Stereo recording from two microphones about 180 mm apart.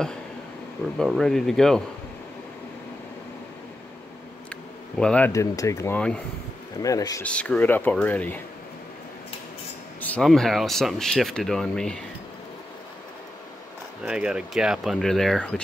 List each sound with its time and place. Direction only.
0.9 s speech: centre (ahead or behind)
4.9 s speech: 5° left (ahead or behind)
5.3 s speech: 15° left (ahead or behind)
6.8 s speech: 20° left (ahead or behind)
7.2 s speech: 5° left (ahead or behind)
9.9 s speech: 5° left (ahead or behind)
14.0 s speech: 5° right (ahead or behind)